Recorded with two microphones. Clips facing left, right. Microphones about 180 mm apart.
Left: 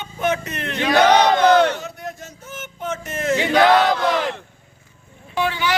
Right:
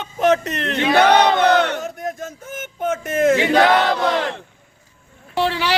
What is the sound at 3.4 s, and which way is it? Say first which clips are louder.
Chant: even; 25° right (ahead or behind).